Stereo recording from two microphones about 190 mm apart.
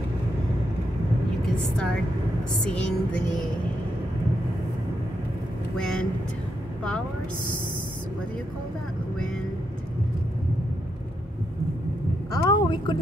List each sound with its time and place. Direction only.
1.4 s a woman's voice: 5° left (ahead or behind)
2.6 s music: 5° left (ahead or behind)
5.8 s music: 5° left (ahead or behind)
12.3 s a sound: 25° left (ahead or behind)